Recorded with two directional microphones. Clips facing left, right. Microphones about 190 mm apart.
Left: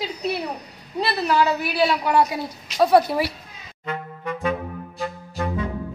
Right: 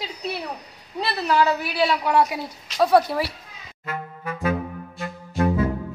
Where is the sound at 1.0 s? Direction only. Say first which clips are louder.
Left 1 dB; 5° left (ahead or behind).